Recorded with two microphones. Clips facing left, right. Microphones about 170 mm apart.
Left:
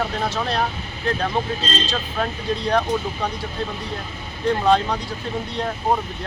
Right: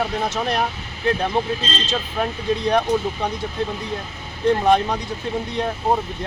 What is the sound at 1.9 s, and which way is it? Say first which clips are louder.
Speech: right 1 dB; 20° right (ahead or behind).